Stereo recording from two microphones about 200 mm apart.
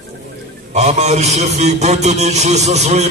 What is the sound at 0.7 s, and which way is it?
A man's voice, 35° right (ahead or behind).